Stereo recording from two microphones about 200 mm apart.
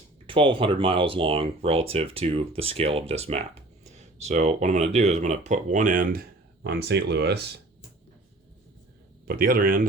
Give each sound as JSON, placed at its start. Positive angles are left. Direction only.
{"t": 0.3, "sound": "speech", "side_deg": -25}
{"t": 6.7, "sound": "speech", "side_deg": -55}
{"t": 9.2, "sound": "speech", "side_deg": -45}